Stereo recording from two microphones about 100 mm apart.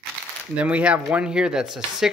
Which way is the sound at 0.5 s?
15° right (ahead or behind).